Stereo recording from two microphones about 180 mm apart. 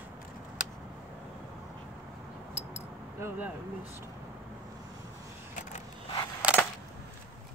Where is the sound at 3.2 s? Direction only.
10° right (ahead or behind).